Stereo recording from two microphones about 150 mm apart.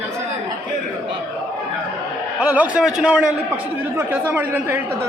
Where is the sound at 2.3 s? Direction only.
10° right (ahead or behind).